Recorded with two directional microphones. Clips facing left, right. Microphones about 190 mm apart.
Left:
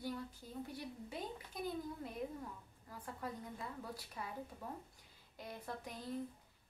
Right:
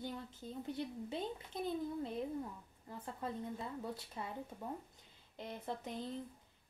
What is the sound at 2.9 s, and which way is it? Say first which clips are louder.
A woman's voice: right 3 dB; 25° right (ahead or behind).